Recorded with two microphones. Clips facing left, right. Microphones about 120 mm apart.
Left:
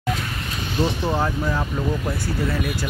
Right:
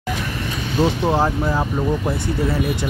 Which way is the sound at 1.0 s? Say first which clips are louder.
Right 4 dB; 25° right (ahead or behind).